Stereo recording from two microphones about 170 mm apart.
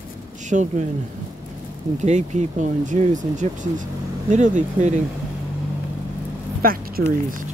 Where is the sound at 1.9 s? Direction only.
45° right (ahead or behind).